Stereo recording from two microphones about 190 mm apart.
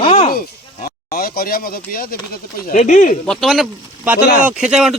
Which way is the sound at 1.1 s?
50° left (ahead or behind).